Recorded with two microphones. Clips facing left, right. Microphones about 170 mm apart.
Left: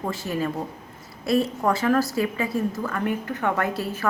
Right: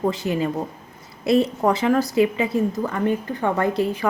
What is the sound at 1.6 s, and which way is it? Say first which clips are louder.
A woman's voice: right 2 dB; 20° right (ahead or behind).